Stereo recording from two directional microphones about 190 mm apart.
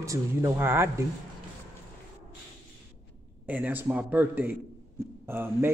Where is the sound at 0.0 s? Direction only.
15° right (ahead or behind).